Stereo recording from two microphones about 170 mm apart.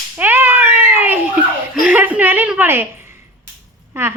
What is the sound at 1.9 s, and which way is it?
A woman's voice, 10° right (ahead or behind).